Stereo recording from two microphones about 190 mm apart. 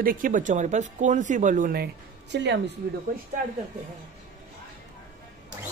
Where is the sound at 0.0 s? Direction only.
45° right (ahead or behind).